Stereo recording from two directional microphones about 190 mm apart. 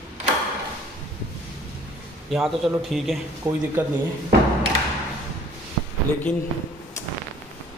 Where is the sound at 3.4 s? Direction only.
20° right (ahead or behind).